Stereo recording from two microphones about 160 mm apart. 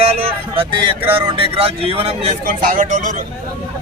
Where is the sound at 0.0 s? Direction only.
35° right (ahead or behind).